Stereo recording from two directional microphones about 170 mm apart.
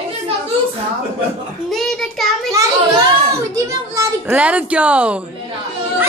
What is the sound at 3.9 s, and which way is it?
A woman's voice, 10° right (ahead or behind).